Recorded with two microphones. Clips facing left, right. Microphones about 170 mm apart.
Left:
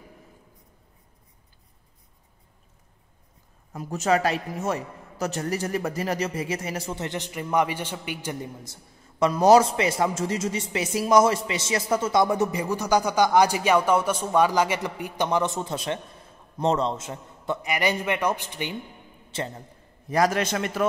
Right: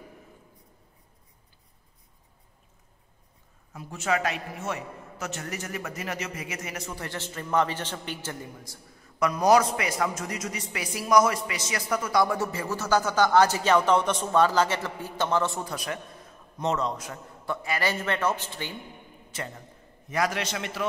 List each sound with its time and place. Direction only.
3.7 s a man's voice: 40° left (ahead or behind); by 18.8 s 15° left (ahead or behind)
19.3 s a man's voice: 30° left (ahead or behind)
20.1 s a man's voice: 40° left (ahead or behind)